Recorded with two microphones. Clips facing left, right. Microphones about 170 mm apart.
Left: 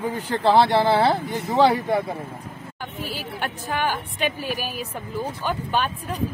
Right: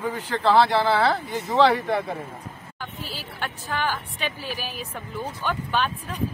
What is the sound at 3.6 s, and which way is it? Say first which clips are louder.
Speech: left 2 dB; 15° left (ahead or behind).